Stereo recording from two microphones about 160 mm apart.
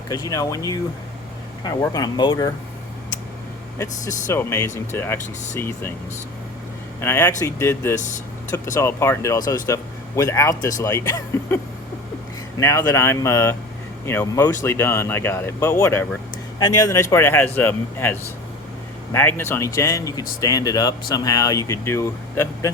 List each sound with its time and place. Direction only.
0.1 s speech: 20° left (ahead or behind)
3.8 s speech: 15° left (ahead or behind)
7.0 s speech: 15° left (ahead or behind)